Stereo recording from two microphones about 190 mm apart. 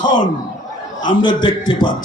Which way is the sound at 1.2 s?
25° left (ahead or behind).